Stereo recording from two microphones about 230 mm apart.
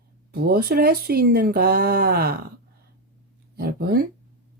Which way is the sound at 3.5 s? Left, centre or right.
Right.